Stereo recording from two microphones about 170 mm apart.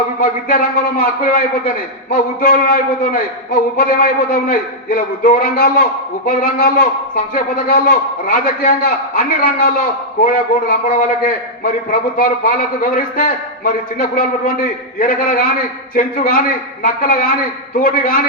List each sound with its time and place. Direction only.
0.2 s a man's voice: 55° left (ahead or behind)